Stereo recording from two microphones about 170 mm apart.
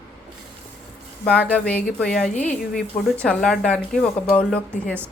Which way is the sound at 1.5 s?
5° left (ahead or behind).